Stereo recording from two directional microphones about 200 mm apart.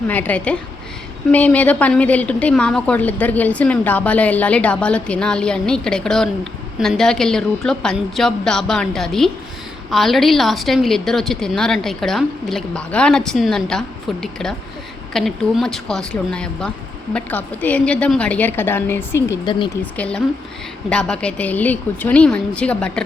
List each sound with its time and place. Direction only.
0.1 s a woman's voice: 5° left (ahead or behind)
19.5 s speech: 25° left (ahead or behind)
19.8 s a woman's voice: 5° left (ahead or behind)